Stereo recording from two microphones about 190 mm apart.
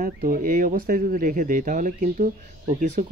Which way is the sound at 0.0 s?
45° right (ahead or behind).